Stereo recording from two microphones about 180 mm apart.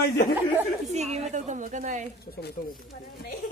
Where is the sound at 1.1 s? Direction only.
40° right (ahead or behind).